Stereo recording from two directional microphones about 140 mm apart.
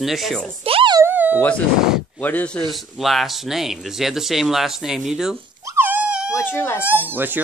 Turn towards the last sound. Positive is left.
turn(degrees=-15)  # may be behind; listen again after turning